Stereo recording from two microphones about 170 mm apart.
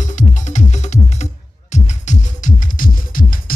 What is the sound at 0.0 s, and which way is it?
Music, 45° left (ahead or behind).